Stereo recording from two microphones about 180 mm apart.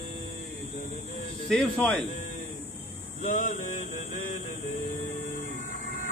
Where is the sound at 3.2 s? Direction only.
40° left (ahead or behind).